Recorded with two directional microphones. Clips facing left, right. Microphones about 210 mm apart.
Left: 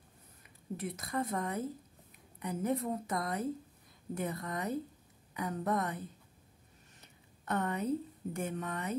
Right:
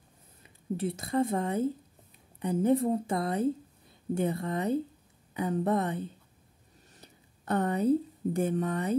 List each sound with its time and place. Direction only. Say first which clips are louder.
0.4 s a woman's voice: right 8 dB; 30° right (ahead or behind)